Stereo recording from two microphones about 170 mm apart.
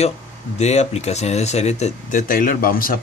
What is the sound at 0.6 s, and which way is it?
Speech, 40° left (ahead or behind).